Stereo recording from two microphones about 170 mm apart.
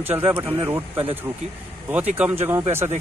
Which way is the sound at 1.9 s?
10° right (ahead or behind).